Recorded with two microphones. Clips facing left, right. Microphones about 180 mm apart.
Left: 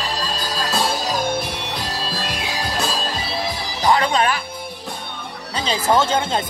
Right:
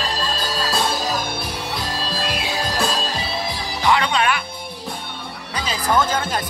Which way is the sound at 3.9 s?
40° left (ahead or behind).